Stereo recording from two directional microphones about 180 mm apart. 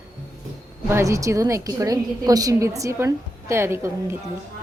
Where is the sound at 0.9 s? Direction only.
15° right (ahead or behind).